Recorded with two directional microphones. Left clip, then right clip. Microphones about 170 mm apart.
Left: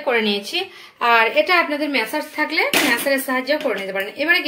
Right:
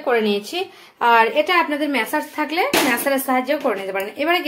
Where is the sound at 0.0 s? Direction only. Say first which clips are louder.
Even; 15° right (ahead or behind).